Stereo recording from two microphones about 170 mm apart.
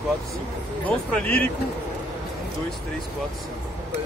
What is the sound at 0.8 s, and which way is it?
Speech, 10° left (ahead or behind).